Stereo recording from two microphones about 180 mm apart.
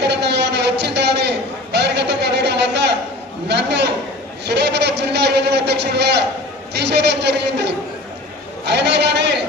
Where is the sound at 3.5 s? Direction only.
70° right (ahead or behind).